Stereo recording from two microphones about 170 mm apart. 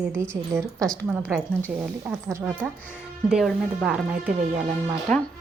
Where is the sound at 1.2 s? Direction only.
5° left (ahead or behind).